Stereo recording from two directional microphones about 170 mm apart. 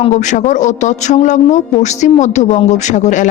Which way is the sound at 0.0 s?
45° left (ahead or behind).